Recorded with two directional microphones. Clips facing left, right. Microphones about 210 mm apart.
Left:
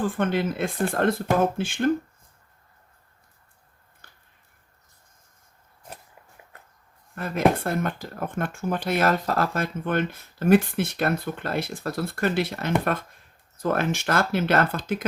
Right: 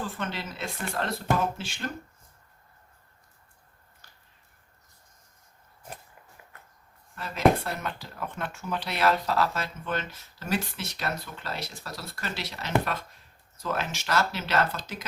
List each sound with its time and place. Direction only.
0.0 s speech: 55° left (ahead or behind)
4.0 s a sound: 55° left (ahead or behind)
7.2 s speech: 50° left (ahead or behind)